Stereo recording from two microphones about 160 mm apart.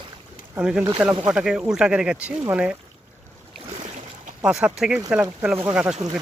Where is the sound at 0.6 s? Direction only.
5° right (ahead or behind).